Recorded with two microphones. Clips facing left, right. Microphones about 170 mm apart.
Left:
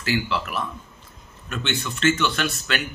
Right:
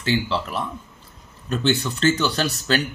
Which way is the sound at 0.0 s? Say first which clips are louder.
Right 2 dB; 30° right (ahead or behind).